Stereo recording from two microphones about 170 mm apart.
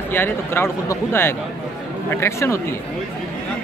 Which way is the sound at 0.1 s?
15° left (ahead or behind).